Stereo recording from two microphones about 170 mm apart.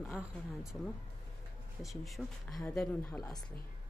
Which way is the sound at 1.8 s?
Centre (ahead or behind).